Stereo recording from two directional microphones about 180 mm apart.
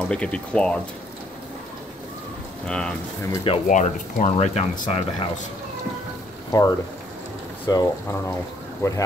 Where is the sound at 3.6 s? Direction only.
45° left (ahead or behind).